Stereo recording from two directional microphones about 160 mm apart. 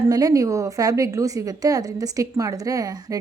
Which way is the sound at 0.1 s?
20° right (ahead or behind).